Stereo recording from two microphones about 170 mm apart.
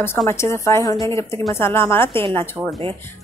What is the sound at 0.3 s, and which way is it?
Speech, 15° left (ahead or behind).